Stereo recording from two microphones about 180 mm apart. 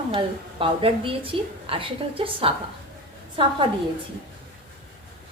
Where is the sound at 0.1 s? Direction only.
30° right (ahead or behind).